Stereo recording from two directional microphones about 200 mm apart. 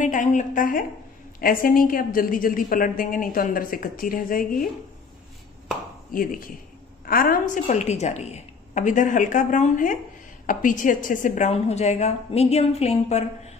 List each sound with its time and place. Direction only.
0.0 s a woman's voice: 40° left (ahead or behind)
6.1 s a woman's voice: 45° left (ahead or behind)